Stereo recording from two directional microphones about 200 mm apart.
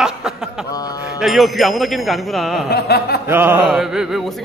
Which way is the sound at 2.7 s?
50° left (ahead or behind).